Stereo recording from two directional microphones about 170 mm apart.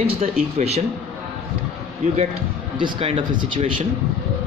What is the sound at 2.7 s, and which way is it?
Speech, 30° right (ahead or behind).